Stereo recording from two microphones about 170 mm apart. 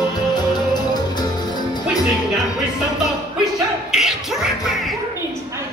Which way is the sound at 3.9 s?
Centre (ahead or behind).